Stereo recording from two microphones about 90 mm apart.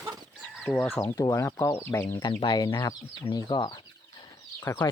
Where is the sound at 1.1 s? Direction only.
35° left (ahead or behind).